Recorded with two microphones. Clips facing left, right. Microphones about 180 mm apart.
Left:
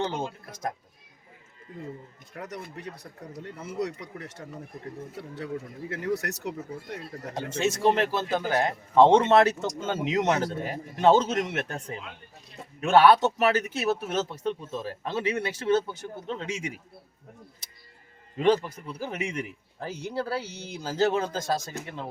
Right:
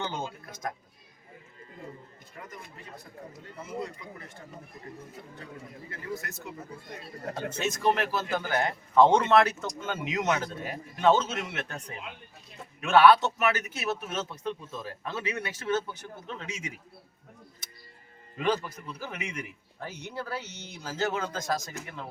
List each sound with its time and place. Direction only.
0.0 s a man's voice: 30° left (ahead or behind)
2.4 s speech: 75° left (ahead or behind)
7.6 s a man's voice: 25° left (ahead or behind); by 11.8 s 45° left (ahead or behind)
12.8 s a man's voice: 35° left (ahead or behind)
18.3 s a man's voice: 30° left (ahead or behind)